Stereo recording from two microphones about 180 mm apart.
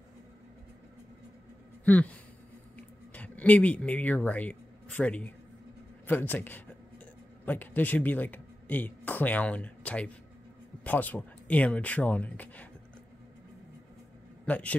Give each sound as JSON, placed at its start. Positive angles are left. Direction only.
{"t": 1.9, "sound": "a man's voice", "side_deg": 10}
{"t": 14.4, "sound": "a man's voice", "side_deg": 10}